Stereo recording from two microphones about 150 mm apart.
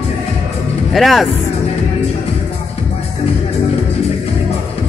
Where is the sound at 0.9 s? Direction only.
Centre (ahead or behind).